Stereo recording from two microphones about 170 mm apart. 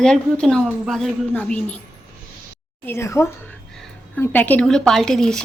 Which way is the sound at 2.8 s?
15° left (ahead or behind).